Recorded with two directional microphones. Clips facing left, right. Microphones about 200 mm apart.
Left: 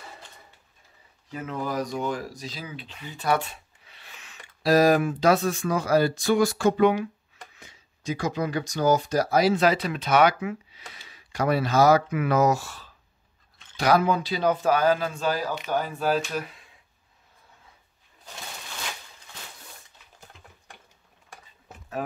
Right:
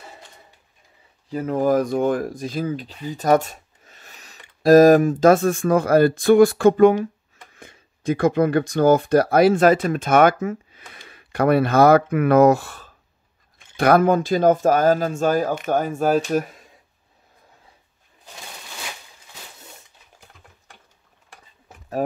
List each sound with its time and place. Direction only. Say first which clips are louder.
1.3 s speech: right 11 dB; 40° right (ahead or behind)